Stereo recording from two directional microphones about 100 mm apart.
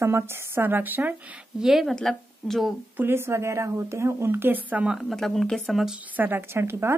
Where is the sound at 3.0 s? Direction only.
25° right (ahead or behind); by 5.1 s 5° right (ahead or behind).